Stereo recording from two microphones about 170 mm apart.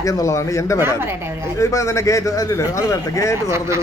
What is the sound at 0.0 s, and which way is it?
Speech, 20° left (ahead or behind).